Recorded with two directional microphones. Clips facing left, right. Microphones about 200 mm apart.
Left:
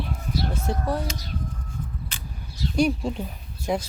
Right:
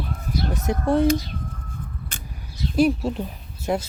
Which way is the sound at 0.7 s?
15° right (ahead or behind).